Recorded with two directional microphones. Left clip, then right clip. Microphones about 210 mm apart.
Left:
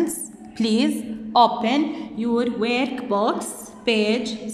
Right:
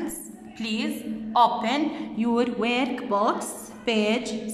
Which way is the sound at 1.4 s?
10° left (ahead or behind).